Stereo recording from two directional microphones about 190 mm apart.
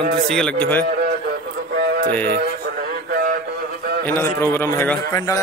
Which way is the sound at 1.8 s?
50° right (ahead or behind).